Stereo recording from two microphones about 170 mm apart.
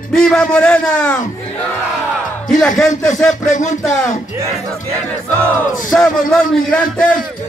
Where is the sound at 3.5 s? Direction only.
45° left (ahead or behind).